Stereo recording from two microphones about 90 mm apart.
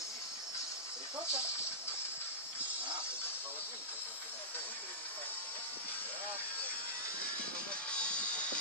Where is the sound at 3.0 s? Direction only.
25° left (ahead or behind).